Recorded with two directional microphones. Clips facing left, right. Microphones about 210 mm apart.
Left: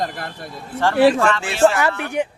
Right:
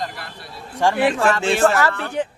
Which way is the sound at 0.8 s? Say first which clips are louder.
Right 1 dB; 15° right (ahead or behind).